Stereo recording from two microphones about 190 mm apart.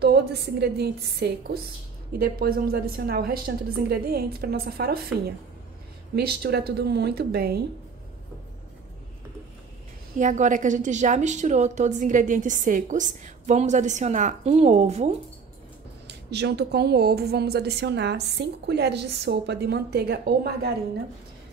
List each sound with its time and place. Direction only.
0.0 s a woman's voice: 60° right (ahead or behind)
6.1 s a woman's voice: 55° right (ahead or behind)
10.1 s a woman's voice: 40° right (ahead or behind)
16.1 s a woman's voice: 60° right (ahead or behind)